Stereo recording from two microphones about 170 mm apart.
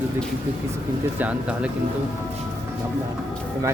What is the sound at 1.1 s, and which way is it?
Speech, 10° right (ahead or behind).